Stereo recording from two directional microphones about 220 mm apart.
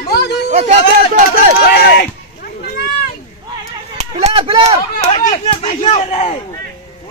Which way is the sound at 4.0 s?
30° right (ahead or behind).